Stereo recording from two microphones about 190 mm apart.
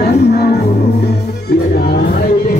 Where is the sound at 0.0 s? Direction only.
55° left (ahead or behind).